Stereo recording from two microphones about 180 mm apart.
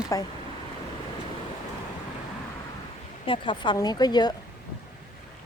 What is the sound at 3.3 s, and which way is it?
Speech, 25° left (ahead or behind).